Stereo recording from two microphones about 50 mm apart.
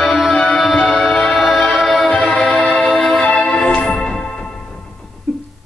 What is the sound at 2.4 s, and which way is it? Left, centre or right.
Music, centre.